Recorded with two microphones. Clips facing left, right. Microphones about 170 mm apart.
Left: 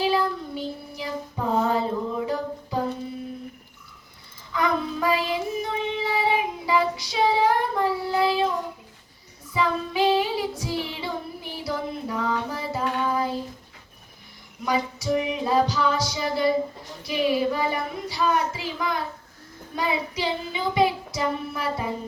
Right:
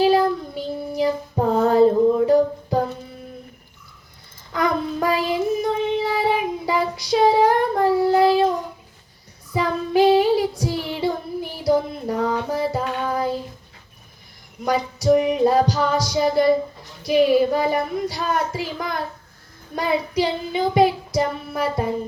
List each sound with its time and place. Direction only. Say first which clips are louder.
0.0 s child singing: right 7 dB; 40° right (ahead or behind)
0.9 s a sound: right 13 dB; 45° right (ahead or behind)
4.5 s child singing: right 3 dB; 40° right (ahead or behind)
9.5 s child singing: right 3 dB; 40° right (ahead or behind)
11.6 s music: right 9 dB; 40° right (ahead or behind)
14.6 s music: right 4 dB; 40° right (ahead or behind)
17.0 s child singing: right 7 dB; 45° right (ahead or behind)